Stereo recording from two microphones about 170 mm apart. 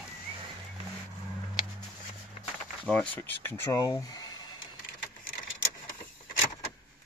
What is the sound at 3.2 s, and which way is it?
Speech, 15° left (ahead or behind).